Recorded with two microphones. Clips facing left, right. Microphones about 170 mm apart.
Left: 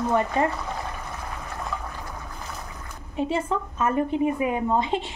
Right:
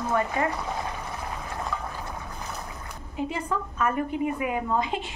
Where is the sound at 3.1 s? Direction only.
25° left (ahead or behind).